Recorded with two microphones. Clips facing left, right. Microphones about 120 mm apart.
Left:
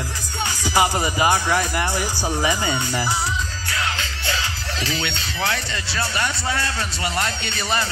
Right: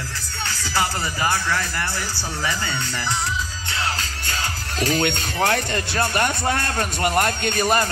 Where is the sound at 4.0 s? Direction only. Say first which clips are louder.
Left 2 dB; 45° right (ahead or behind).